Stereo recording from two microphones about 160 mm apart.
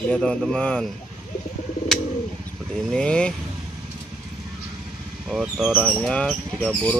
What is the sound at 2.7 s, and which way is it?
Speech, 5° left (ahead or behind).